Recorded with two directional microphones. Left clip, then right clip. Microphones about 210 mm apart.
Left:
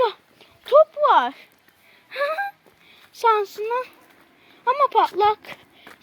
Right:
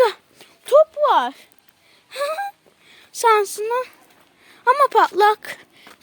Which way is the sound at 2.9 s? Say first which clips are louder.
Right 3 dB; 35° right (ahead or behind).